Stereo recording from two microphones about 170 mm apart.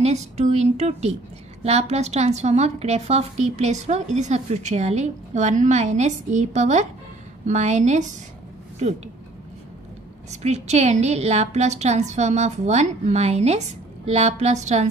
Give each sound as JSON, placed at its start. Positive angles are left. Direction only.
{"t": 0.0, "sound": "a woman's voice", "side_deg": -40}
{"t": 10.3, "sound": "a woman's voice", "side_deg": -40}